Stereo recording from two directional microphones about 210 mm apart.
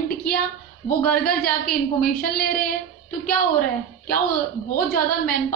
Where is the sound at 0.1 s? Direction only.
45° left (ahead or behind).